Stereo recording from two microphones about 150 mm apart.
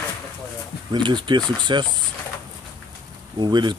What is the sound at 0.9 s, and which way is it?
Speech, 30° right (ahead or behind).